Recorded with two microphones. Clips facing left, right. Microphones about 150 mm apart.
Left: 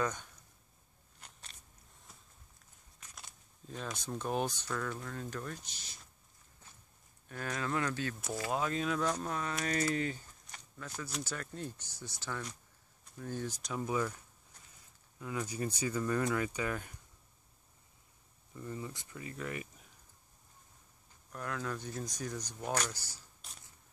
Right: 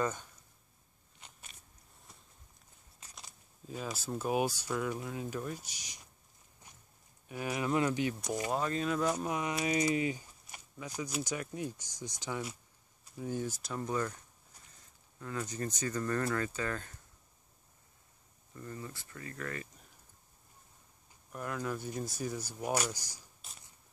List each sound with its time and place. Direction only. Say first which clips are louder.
0.0 s speech: right 1 dB; 5° right (ahead or behind)
1.2 s biting: even; 10° right (ahead or behind)
3.2 s speech: right 1 dB; 5° right (ahead or behind)
7.2 s speech: right 3 dB; 10° right (ahead or behind)
8.5 s speech: even; centre (ahead or behind)
15.1 s speech: even; 10° left (ahead or behind)
18.5 s speech: left 2 dB; 15° left (ahead or behind)
21.3 s speech: right 2 dB; 10° right (ahead or behind)